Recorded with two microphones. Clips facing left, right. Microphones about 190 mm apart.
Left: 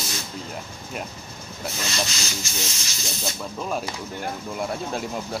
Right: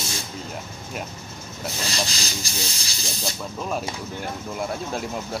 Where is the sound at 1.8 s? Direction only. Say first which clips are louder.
Even; 35° right (ahead or behind).